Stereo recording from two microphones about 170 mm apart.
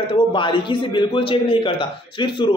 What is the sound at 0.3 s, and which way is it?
Speech, 30° left (ahead or behind).